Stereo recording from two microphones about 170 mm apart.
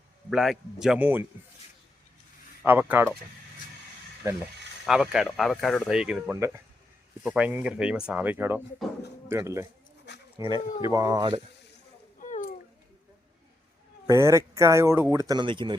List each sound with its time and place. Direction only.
0.3 s speech: centre (ahead or behind)
2.6 s speech: 10° right (ahead or behind)
4.2 s speech: 20° right (ahead or behind)
4.9 s speech: 5° right (ahead or behind)
6.3 s speech: 15° right (ahead or behind)
10.1 s a sound: 90° left
10.8 s speech: 20° right (ahead or behind)
12.2 s a sound: 45° left (ahead or behind)
14.1 s speech: 20° right (ahead or behind)